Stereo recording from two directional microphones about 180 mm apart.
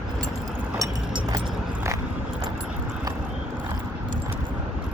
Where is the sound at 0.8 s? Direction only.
20° right (ahead or behind).